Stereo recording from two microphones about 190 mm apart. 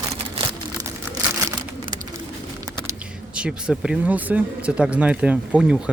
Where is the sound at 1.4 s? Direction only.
20° right (ahead or behind).